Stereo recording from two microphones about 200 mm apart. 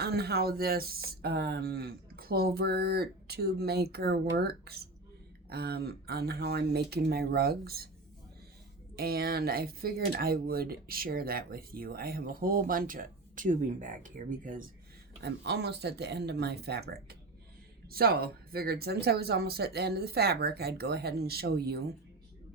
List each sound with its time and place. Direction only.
0.0 s speech: 55° right (ahead or behind)
9.0 s speech: 50° right (ahead or behind)
15.2 s speech: 55° right (ahead or behind)